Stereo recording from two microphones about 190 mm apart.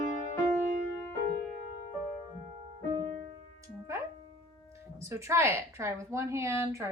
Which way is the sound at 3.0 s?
25° right (ahead or behind).